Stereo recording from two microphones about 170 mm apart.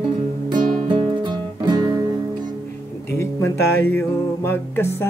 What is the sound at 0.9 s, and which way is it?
Music, 25° right (ahead or behind).